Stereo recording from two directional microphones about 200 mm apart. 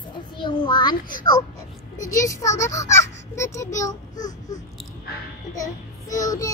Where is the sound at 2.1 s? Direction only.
15° left (ahead or behind).